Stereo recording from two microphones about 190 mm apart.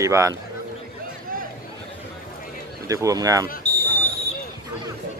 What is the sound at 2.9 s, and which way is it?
Speech, 15° right (ahead or behind).